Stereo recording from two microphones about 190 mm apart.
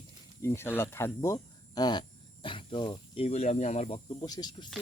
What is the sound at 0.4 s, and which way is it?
Speech, 10° left (ahead or behind).